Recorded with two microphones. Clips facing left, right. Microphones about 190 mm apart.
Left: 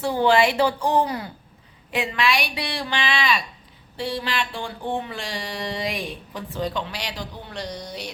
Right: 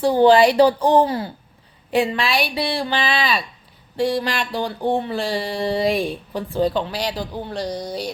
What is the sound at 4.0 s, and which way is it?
A man's voice, 45° right (ahead or behind).